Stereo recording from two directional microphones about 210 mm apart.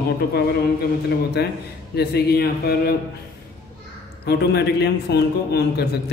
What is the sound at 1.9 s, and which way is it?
A man's voice, 50° left (ahead or behind).